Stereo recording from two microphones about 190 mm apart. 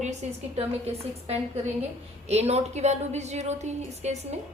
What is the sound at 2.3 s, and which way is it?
Speech, 35° right (ahead or behind).